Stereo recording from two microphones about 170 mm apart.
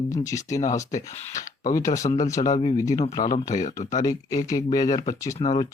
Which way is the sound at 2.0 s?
35° left (ahead or behind).